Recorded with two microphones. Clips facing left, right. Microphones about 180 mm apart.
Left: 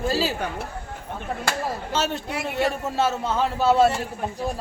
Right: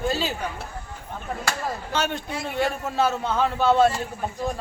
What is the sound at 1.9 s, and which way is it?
A man's voice, 5° left (ahead or behind).